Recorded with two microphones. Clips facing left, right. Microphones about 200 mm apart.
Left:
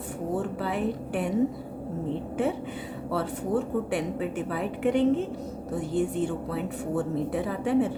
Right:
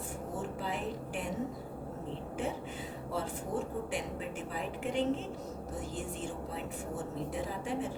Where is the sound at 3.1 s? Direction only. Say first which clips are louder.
Left 9 dB; 65° left (ahead or behind).